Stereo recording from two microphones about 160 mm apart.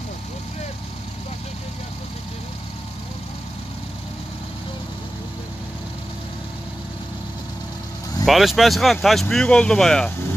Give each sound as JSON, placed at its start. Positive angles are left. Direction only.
{"t": 8.3, "sound": "speech", "side_deg": 0}